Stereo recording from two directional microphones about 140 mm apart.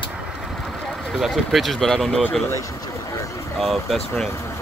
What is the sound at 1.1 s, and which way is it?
Speech, centre (ahead or behind).